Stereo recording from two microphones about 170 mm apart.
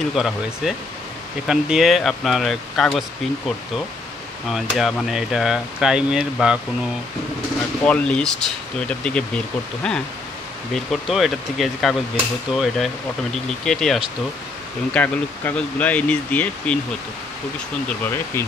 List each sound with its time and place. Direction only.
0.1 s speech: centre (ahead or behind)
7.8 s speech: 5° left (ahead or behind)
10.7 s speech: centre (ahead or behind)
17.8 s speech: 10° left (ahead or behind)